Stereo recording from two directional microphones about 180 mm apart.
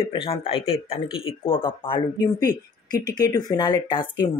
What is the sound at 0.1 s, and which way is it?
Speech, 30° left (ahead or behind).